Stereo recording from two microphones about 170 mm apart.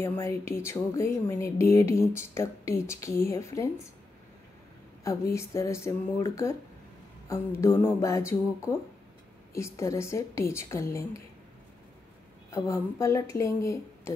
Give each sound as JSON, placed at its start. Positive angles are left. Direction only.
{"t": 0.0, "sound": "speech", "side_deg": 15}
{"t": 5.3, "sound": "speech", "side_deg": 15}
{"t": 9.5, "sound": "speech", "side_deg": 15}
{"t": 12.4, "sound": "speech", "side_deg": 15}